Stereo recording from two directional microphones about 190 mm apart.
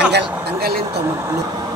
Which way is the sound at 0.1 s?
55° right (ahead or behind).